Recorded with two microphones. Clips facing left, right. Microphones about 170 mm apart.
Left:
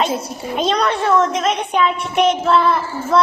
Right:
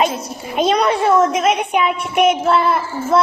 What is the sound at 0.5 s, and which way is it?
A child's voice, 10° right (ahead or behind).